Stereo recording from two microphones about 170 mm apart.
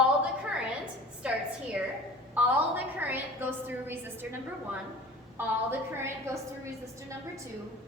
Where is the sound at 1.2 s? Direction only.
5° right (ahead or behind).